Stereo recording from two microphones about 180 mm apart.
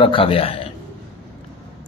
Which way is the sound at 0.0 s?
30° left (ahead or behind).